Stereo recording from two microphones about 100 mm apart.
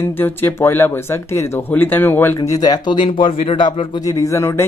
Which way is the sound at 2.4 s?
40° left (ahead or behind).